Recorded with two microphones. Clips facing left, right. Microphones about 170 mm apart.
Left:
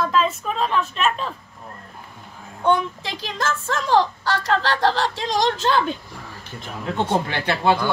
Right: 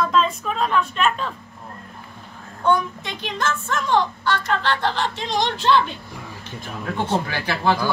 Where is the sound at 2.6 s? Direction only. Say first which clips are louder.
Even; 30° left (ahead or behind); by 5.8 s 45° left (ahead or behind).